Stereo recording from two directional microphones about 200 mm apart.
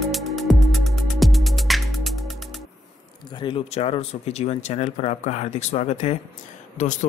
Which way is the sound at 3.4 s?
30° left (ahead or behind).